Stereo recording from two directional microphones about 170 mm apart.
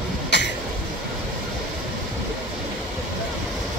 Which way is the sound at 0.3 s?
90° left.